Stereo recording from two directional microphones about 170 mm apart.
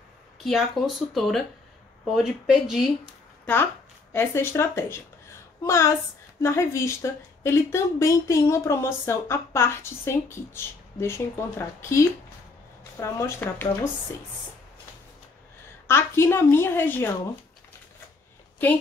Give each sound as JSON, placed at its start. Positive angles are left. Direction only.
{"t": 0.4, "sound": "speech", "side_deg": 0}
{"t": 4.1, "sound": "speech", "side_deg": 15}
{"t": 15.9, "sound": "speech", "side_deg": 15}